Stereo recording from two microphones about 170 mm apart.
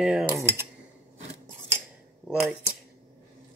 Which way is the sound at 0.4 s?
15° right (ahead or behind).